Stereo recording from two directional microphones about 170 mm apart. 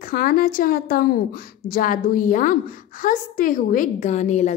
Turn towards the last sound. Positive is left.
turn(degrees=45)  # may be behind; listen again after turning